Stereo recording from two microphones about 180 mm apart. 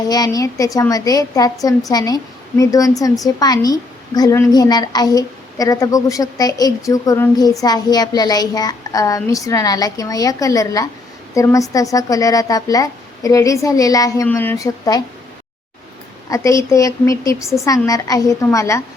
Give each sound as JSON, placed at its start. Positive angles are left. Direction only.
{"t": 0.1, "sound": "a woman's voice", "side_deg": 20}
{"t": 16.3, "sound": "a woman's voice", "side_deg": 15}